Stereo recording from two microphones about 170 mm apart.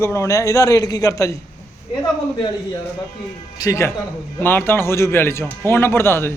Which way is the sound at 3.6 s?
15° left (ahead or behind).